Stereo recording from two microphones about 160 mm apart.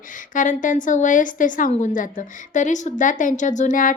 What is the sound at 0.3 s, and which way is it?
A woman's voice, 55° left (ahead or behind).